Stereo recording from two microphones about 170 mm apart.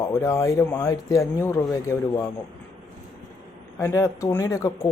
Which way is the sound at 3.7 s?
15° left (ahead or behind).